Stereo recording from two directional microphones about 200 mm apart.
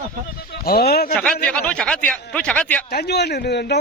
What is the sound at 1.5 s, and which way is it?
Speech, 5° left (ahead or behind).